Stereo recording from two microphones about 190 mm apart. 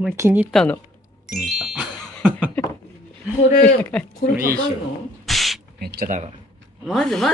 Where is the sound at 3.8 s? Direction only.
5° left (ahead or behind).